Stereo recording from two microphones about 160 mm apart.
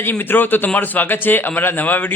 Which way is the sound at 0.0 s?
10° left (ahead or behind).